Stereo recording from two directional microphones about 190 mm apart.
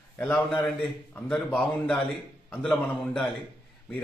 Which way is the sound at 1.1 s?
5° left (ahead or behind).